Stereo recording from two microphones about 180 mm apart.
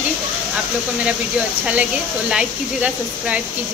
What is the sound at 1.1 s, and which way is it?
Speech, 5° right (ahead or behind).